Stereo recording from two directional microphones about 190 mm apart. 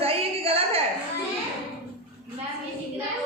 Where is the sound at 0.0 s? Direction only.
30° right (ahead or behind).